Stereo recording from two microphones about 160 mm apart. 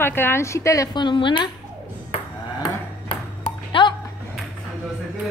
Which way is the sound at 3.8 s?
30° left (ahead or behind).